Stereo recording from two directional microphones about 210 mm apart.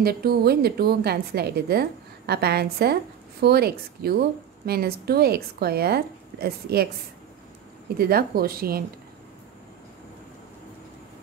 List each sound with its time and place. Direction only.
0.0 s a woman's voice: 45° right (ahead or behind)
8.0 s a woman's voice: 45° right (ahead or behind)